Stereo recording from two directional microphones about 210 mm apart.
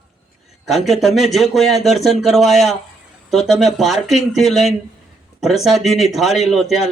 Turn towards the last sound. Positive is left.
turn(degrees=0)  # may be behind; listen again after turning